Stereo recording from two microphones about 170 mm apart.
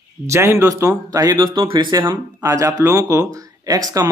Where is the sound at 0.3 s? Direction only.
15° right (ahead or behind).